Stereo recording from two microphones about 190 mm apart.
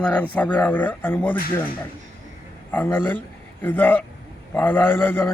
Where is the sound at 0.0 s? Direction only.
10° left (ahead or behind).